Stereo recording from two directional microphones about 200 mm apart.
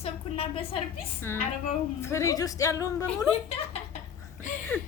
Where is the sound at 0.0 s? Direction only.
30° left (ahead or behind).